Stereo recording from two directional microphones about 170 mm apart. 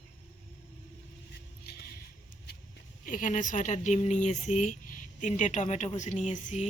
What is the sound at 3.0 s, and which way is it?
Speech, 50° left (ahead or behind).